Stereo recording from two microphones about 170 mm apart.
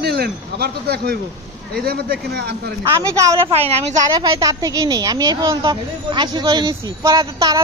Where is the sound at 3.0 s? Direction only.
20° right (ahead or behind).